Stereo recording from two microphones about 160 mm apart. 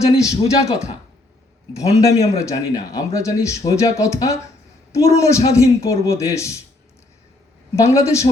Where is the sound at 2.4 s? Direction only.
20° left (ahead or behind).